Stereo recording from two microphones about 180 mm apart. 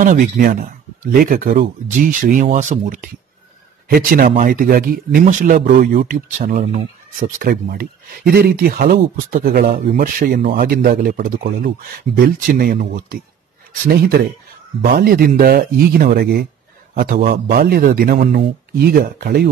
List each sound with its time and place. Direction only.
0.0 s a man's voice: 50° right (ahead or behind)